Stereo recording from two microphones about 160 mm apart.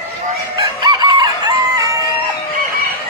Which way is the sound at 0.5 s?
30° right (ahead or behind).